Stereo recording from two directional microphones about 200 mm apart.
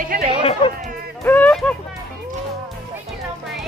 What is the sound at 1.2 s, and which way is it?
Speech, 10° left (ahead or behind).